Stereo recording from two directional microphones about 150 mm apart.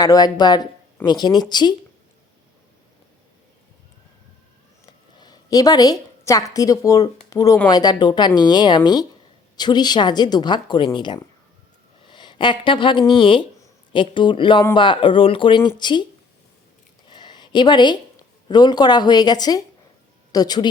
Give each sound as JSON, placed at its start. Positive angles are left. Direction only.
{"t": 0.0, "sound": "a woman's voice", "side_deg": 25}
{"t": 4.9, "sound": "a woman's voice", "side_deg": 30}
{"t": 17.1, "sound": "a sound", "side_deg": 30}
{"t": 18.4, "sound": "a woman's voice", "side_deg": 30}